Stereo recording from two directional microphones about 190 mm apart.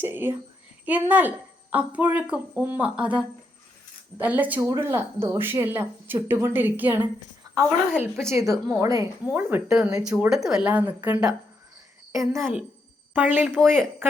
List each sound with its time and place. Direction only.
0.0 s speech: 10° right (ahead or behind)
7.9 s speech: centre (ahead or behind)
8.3 s a woman's voice: 15° right (ahead or behind)
13.5 s speech: 5° left (ahead or behind)